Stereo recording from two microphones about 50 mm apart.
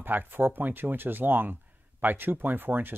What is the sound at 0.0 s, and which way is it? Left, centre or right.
Speech, right.